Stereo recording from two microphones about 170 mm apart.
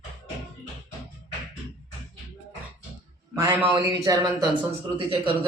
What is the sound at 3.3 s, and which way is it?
A man's voice, 15° right (ahead or behind).